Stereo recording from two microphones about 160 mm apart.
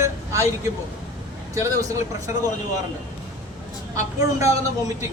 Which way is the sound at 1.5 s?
20° right (ahead or behind).